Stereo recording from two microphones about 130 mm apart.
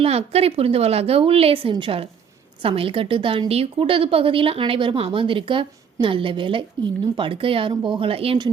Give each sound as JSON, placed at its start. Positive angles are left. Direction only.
{"t": 0.0, "sound": "a woman's voice", "side_deg": -50}